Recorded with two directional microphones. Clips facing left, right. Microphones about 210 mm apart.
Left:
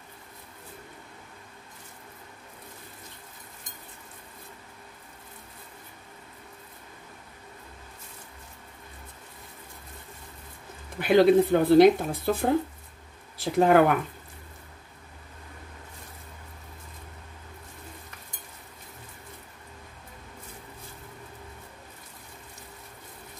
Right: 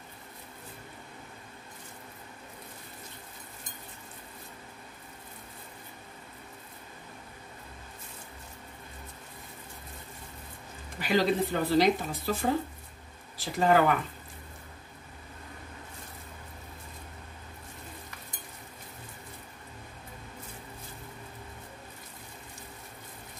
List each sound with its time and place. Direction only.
11.0 s speech: 55° left (ahead or behind)